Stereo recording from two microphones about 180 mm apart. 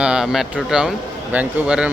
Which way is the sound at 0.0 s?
5° right (ahead or behind).